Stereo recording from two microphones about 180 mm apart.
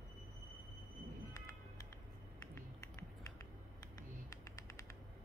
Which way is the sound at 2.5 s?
20° left (ahead or behind).